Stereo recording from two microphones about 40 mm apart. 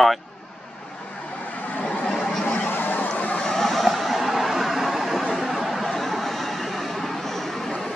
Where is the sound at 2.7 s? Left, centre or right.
Left.